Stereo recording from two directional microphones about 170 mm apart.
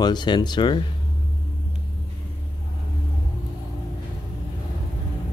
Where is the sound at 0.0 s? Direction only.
25° left (ahead or behind).